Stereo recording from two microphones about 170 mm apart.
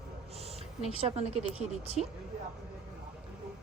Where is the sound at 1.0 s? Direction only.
35° right (ahead or behind).